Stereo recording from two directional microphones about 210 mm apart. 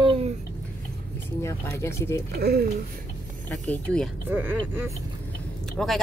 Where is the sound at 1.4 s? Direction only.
15° left (ahead or behind).